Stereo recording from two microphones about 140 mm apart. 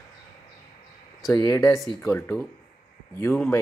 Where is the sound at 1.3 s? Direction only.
25° left (ahead or behind).